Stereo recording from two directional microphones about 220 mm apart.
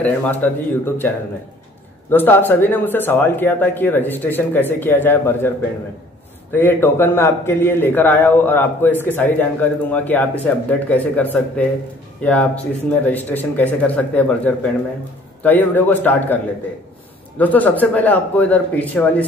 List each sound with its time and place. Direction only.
0.0 s a man's voice: 5° left (ahead or behind)
6.5 s a man's voice: 10° left (ahead or behind)
17.4 s a man's voice: 5° left (ahead or behind)